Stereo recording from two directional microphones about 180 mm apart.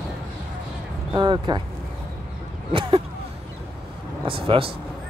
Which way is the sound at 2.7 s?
30° right (ahead or behind).